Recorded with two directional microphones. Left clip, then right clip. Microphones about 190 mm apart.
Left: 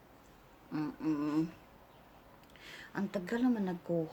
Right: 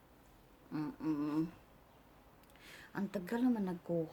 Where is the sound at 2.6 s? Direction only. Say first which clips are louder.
Left 3 dB; 15° right (ahead or behind).